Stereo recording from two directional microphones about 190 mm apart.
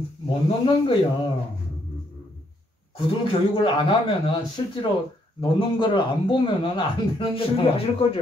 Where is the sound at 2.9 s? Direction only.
25° left (ahead or behind).